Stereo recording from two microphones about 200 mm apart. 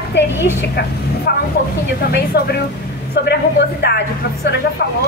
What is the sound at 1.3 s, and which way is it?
A woman's voice, 55° left (ahead or behind).